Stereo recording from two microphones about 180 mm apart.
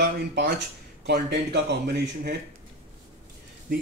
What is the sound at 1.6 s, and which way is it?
Speech, 65° right (ahead or behind).